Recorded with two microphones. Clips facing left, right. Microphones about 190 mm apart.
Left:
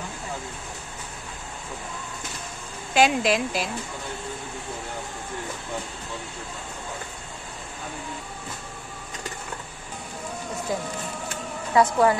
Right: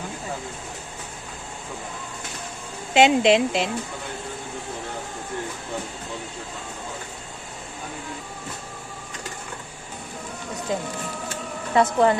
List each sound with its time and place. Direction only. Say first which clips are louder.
2.9 s speech: right 4 dB; 25° right (ahead or behind)
10.7 s speech: right 3 dB; 25° right (ahead or behind)